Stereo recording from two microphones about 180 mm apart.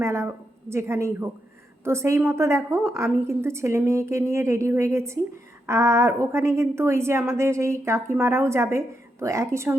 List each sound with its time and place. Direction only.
0.0 s a woman's voice: 15° right (ahead or behind)